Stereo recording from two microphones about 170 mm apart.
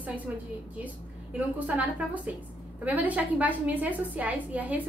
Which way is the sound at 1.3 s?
5° right (ahead or behind).